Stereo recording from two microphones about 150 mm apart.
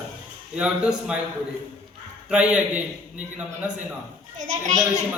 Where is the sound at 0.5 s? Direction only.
5° right (ahead or behind).